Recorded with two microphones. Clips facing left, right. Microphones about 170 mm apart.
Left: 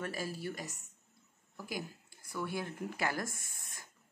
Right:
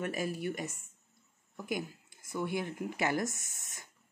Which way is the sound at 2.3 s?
20° right (ahead or behind).